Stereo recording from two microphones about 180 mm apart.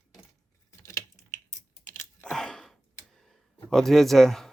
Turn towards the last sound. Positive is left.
turn(degrees=0)  # may be behind; listen again after turning